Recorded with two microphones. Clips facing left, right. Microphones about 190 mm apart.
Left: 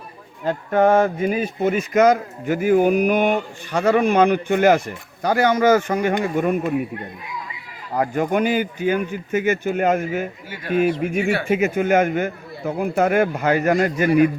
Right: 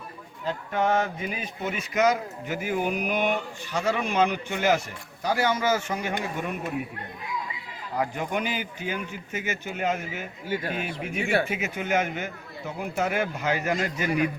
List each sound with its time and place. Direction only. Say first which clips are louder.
0.4 s a man's voice: left 9 dB; 50° left (ahead or behind)
7.9 s a man's voice: left 8 dB; 55° left (ahead or behind)